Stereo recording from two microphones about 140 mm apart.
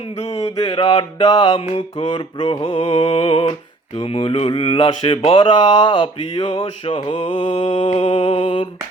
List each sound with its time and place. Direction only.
0.3 s mantra: 25° left (ahead or behind)
2.6 s speech: 50° left (ahead or behind)